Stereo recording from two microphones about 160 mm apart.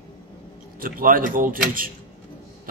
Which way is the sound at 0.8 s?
60° right (ahead or behind).